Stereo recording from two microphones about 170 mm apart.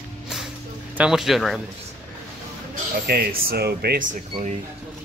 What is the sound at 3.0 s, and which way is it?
Speech, 65° right (ahead or behind).